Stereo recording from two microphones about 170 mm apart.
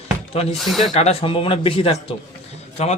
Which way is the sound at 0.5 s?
Centre (ahead or behind).